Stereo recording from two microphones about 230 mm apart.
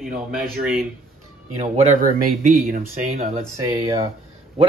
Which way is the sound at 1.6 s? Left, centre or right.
Right.